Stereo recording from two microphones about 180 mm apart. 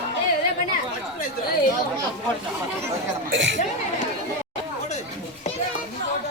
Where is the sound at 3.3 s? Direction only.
90° right.